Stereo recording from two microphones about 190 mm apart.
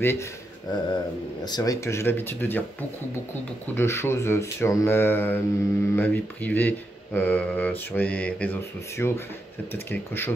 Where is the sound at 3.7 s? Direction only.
15° left (ahead or behind).